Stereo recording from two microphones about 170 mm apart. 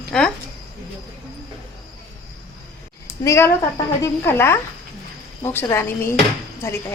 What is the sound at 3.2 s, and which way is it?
A woman's voice, 15° left (ahead or behind).